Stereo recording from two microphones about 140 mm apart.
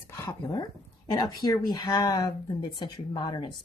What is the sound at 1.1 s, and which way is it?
A woman's voice, 30° left (ahead or behind).